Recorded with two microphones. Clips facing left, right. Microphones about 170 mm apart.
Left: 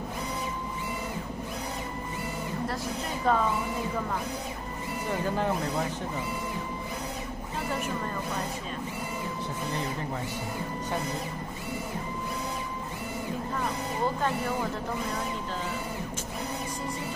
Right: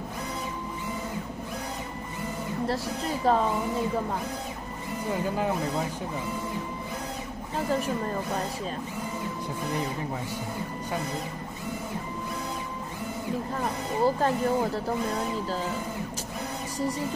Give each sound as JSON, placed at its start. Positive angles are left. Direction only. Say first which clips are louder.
{"t": 3.3, "sound": "speech", "louder": "right 2 dB", "side_deg": -35}
{"t": 14.0, "sound": "speech", "louder": "right 5 dB", "side_deg": -40}